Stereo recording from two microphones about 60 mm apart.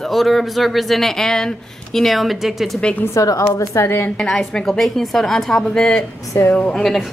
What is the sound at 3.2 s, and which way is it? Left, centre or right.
Speech, left.